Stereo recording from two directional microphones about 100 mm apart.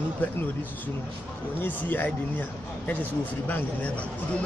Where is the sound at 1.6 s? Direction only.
15° left (ahead or behind).